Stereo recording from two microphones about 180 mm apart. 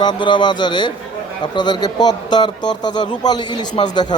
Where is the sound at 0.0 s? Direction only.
25° left (ahead or behind).